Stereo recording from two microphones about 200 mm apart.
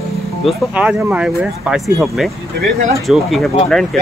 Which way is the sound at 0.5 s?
5° right (ahead or behind).